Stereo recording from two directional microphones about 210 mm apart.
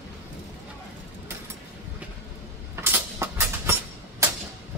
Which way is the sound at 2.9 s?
10° right (ahead or behind).